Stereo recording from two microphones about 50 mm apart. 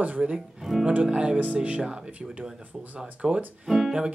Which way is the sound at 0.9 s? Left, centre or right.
Centre.